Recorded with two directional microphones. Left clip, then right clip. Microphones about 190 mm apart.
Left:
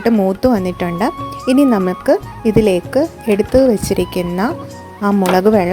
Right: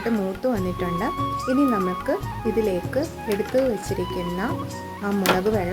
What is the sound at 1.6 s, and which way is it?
Speech, 45° left (ahead or behind).